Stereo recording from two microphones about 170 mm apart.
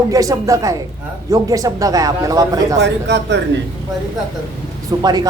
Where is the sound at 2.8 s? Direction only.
90° right.